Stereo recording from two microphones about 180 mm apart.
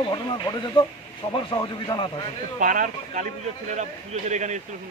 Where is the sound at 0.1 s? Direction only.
20° left (ahead or behind).